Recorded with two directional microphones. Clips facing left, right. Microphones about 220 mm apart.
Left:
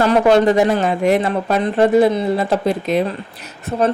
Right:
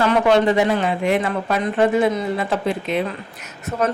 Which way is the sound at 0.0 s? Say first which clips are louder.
Left 3 dB; 40° left (ahead or behind).